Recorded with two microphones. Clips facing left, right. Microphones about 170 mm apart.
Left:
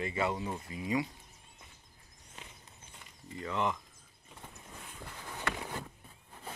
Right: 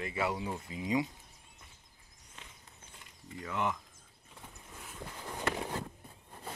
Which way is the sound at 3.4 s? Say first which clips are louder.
Left 1 dB; 5° right (ahead or behind).